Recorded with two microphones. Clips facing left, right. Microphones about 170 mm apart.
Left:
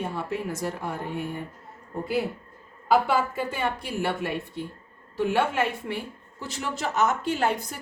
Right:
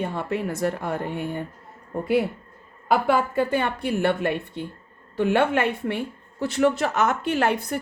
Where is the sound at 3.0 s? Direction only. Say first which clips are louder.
Right 4 dB; 55° right (ahead or behind).